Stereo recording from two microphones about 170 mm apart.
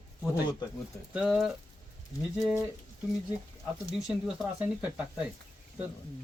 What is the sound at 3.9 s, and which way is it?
Speech, 5° right (ahead or behind).